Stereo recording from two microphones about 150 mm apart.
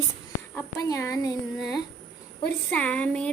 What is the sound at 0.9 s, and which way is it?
Speech, 20° left (ahead or behind).